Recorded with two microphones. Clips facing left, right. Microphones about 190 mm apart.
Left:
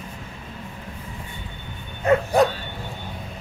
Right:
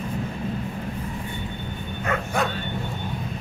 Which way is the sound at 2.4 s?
35° left (ahead or behind).